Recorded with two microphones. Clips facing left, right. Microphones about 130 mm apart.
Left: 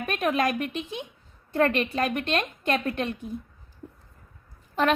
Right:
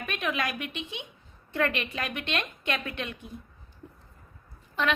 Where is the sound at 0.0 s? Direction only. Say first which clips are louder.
Left 6 dB; 45° left (ahead or behind).